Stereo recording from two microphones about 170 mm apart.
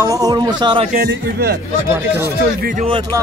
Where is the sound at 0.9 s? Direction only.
65° right (ahead or behind).